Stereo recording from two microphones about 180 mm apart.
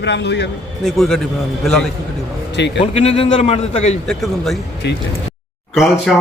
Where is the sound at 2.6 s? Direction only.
70° left (ahead or behind).